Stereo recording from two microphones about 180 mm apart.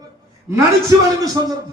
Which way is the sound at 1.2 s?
20° right (ahead or behind).